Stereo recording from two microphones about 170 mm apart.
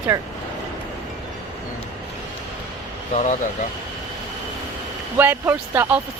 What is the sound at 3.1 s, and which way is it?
Speech, 45° left (ahead or behind).